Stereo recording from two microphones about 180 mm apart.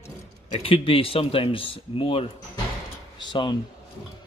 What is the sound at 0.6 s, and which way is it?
Speech, 35° left (ahead or behind).